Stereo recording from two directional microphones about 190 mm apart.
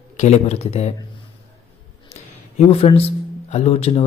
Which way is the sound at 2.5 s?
30° left (ahead or behind).